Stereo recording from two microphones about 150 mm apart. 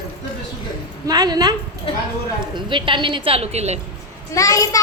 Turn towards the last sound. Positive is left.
turn(degrees=20)  # may be behind; listen again after turning